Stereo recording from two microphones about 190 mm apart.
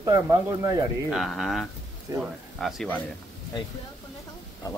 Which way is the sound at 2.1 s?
15° right (ahead or behind).